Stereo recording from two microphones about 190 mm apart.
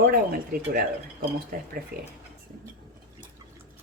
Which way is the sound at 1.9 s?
50° right (ahead or behind).